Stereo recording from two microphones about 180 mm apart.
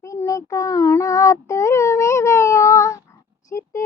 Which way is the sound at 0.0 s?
15° left (ahead or behind).